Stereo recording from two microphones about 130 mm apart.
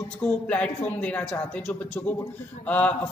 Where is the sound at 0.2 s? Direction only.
10° left (ahead or behind).